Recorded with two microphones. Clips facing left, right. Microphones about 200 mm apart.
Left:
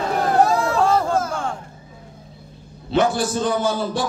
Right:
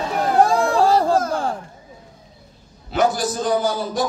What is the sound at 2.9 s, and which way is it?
A man's voice, 30° left (ahead or behind).